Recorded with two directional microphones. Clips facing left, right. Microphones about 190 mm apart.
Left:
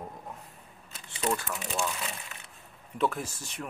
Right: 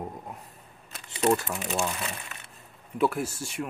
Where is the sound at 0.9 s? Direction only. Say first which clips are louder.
Right 7 dB; 60° right (ahead or behind).